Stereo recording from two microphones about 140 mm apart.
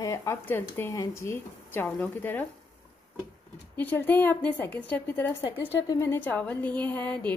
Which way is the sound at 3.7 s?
10° left (ahead or behind).